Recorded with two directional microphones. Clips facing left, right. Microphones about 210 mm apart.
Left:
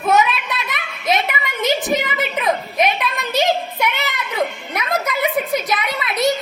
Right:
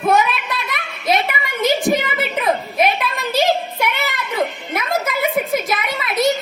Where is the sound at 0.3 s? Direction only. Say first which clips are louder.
Even; centre (ahead or behind).